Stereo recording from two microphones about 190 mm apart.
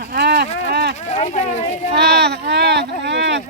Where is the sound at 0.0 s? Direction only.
60° right (ahead or behind).